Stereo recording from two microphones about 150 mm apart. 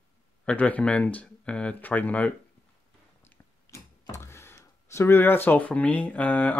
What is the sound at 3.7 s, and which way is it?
Speech, 20° left (ahead or behind).